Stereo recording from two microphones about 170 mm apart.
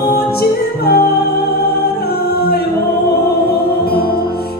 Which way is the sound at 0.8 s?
65° left (ahead or behind).